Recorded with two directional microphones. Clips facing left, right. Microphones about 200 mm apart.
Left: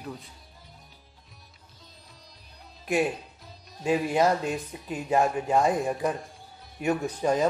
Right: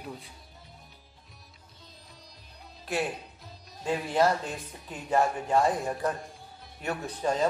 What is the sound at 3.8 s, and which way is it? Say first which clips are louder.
A man's voice: left 2 dB; 15° left (ahead or behind).